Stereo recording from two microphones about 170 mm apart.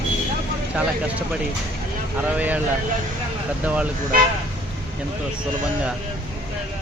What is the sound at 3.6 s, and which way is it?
Speech, 10° right (ahead or behind).